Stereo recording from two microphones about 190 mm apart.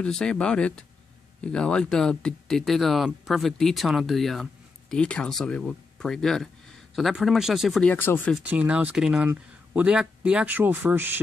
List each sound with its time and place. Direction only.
0.0 s speech: 5° left (ahead or behind)
7.9 s speech: 10° left (ahead or behind)
8.5 s speech: 5° right (ahead or behind)